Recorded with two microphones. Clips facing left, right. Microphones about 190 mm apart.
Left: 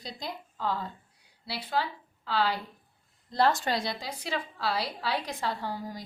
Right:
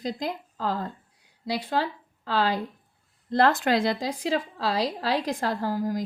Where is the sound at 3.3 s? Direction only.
75° right (ahead or behind).